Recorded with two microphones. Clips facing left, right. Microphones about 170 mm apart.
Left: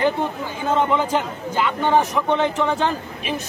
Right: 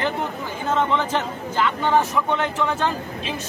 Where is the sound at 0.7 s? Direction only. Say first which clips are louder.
Left 2 dB; 10° left (ahead or behind).